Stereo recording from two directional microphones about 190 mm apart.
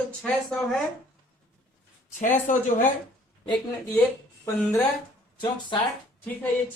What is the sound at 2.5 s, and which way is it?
Speech, 45° left (ahead or behind).